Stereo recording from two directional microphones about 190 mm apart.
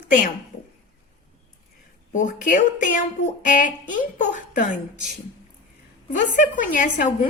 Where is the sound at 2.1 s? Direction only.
45° left (ahead or behind).